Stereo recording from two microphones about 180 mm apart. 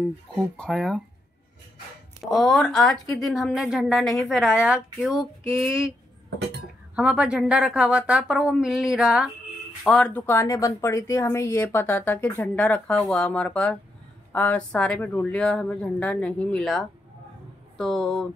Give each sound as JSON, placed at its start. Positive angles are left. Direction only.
{"t": 0.6, "sound": "a woman's voice", "side_deg": 0}
{"t": 2.2, "sound": "a woman's voice", "side_deg": 0}
{"t": 7.0, "sound": "a woman's voice", "side_deg": -5}